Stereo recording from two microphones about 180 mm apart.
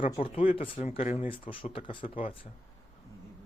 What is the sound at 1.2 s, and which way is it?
Speech, 30° left (ahead or behind).